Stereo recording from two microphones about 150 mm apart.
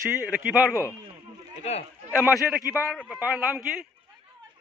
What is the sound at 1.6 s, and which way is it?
Speech, 45° left (ahead or behind).